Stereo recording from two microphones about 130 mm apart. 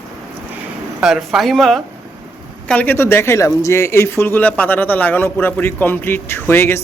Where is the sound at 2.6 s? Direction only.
10° left (ahead or behind).